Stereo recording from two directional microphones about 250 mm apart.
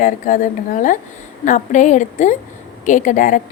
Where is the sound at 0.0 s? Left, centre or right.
Left.